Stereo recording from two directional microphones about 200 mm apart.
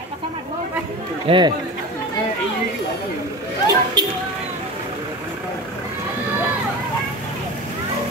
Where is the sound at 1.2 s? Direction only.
25° right (ahead or behind).